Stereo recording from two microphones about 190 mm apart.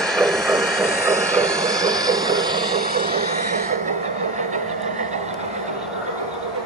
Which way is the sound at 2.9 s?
55° right (ahead or behind).